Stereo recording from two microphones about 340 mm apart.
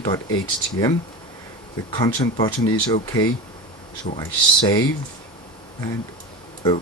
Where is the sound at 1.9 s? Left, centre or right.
Centre.